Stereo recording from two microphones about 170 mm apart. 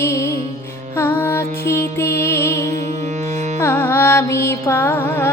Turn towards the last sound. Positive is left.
turn(degrees=15)  # may be behind; listen again after turning